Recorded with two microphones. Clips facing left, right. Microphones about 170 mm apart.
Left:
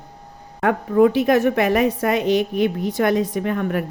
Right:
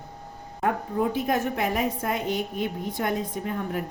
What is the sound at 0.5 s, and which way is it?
A woman's voice, 80° left.